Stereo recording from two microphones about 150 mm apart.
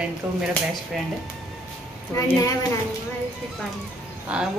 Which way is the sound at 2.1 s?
20° left (ahead or behind).